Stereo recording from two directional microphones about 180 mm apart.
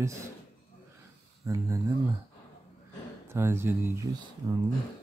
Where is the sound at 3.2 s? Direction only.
15° right (ahead or behind).